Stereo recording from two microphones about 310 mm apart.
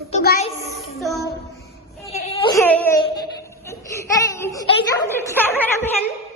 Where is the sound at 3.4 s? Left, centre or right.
Centre.